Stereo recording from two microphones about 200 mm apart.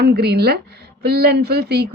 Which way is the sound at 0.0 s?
55° right (ahead or behind).